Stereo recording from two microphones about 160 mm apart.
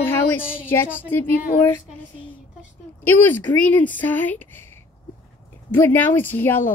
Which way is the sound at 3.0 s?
10° left (ahead or behind).